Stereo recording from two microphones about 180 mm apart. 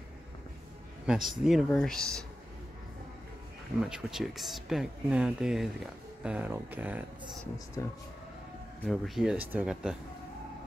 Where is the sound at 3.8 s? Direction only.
5° right (ahead or behind).